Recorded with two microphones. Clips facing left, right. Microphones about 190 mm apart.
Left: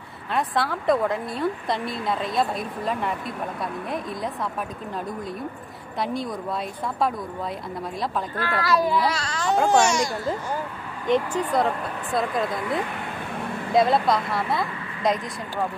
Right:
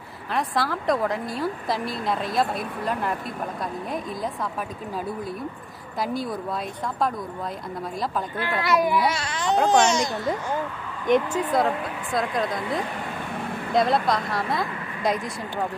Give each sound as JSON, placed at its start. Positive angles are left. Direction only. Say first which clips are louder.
{"t": 0.3, "sound": "speech", "louder": "left 1 dB", "side_deg": 0}
{"t": 5.9, "sound": "speech", "louder": "even", "side_deg": -5}
{"t": 8.4, "sound": "speech", "louder": "even", "side_deg": -20}
{"t": 11.1, "sound": "speech", "louder": "right 1 dB", "side_deg": -5}